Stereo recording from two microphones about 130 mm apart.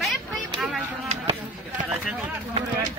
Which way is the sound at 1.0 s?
50° right (ahead or behind).